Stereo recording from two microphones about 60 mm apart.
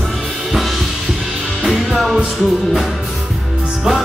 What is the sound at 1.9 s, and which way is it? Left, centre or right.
Music, centre.